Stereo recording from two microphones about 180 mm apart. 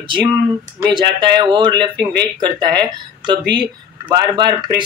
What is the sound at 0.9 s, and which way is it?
Speech, 25° right (ahead or behind).